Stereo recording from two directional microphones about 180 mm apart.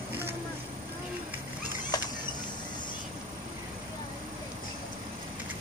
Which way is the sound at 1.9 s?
20° left (ahead or behind).